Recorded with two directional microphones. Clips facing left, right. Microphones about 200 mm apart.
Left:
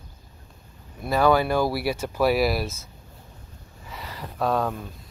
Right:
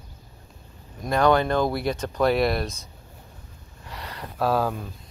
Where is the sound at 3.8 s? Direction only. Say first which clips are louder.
Even; centre (ahead or behind).